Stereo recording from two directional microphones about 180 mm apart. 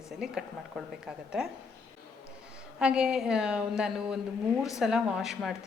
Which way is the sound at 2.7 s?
5° right (ahead or behind).